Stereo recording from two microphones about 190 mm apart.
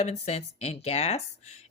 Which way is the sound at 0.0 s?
35° left (ahead or behind).